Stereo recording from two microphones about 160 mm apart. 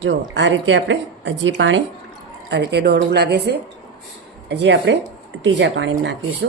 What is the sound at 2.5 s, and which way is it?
A woman's voice, 90° right.